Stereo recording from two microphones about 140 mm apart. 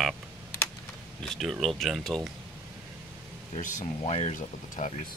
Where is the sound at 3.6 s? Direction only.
65° left (ahead or behind).